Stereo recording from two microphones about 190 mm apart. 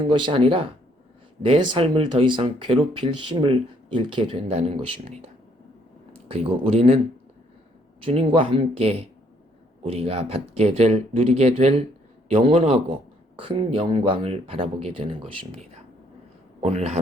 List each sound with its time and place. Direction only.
0.0 s speech: 25° right (ahead or behind)
6.2 s speech: 30° right (ahead or behind)
8.0 s a man's voice: 30° right (ahead or behind)